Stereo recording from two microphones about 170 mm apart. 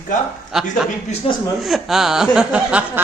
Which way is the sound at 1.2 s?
35° left (ahead or behind).